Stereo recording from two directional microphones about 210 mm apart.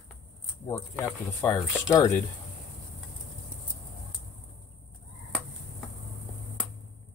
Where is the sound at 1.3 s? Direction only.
5° left (ahead or behind).